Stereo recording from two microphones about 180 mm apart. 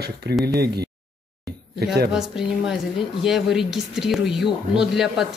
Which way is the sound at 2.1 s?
Centre (ahead or behind).